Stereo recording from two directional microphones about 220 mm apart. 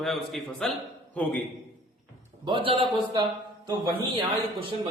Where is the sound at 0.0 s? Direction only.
Centre (ahead or behind).